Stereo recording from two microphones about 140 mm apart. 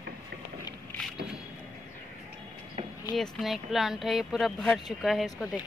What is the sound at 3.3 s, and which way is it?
Speech, centre (ahead or behind).